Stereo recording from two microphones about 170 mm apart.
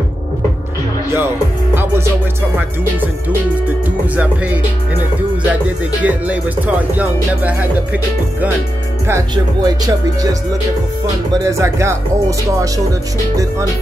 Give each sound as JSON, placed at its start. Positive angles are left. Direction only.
{"t": 6.0, "sound": "music", "side_deg": -10}
{"t": 9.0, "sound": "speech", "side_deg": -20}
{"t": 11.4, "sound": "speech", "side_deg": -15}